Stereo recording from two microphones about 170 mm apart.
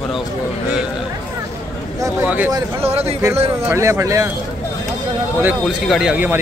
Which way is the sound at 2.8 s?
35° right (ahead or behind).